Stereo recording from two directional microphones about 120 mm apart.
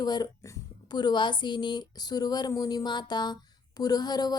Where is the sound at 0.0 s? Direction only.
35° left (ahead or behind).